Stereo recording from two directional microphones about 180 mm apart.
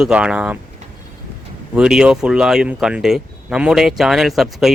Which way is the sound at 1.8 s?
5° right (ahead or behind).